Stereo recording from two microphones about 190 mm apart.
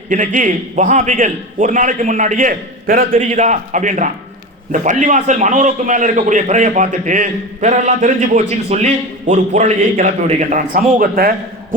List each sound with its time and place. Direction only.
0.1 s a man's voice: 45° right (ahead or behind)